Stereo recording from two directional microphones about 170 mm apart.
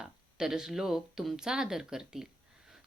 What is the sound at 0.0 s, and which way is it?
Speech, 5° right (ahead or behind).